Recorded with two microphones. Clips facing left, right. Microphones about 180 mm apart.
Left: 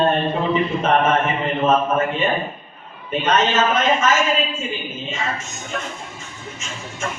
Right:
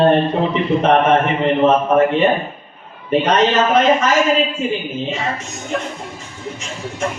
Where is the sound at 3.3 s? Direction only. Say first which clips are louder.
Right 2 dB; 35° right (ahead or behind).